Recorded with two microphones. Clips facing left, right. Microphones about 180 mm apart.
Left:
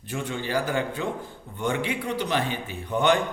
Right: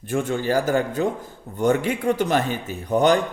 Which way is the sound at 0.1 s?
45° right (ahead or behind).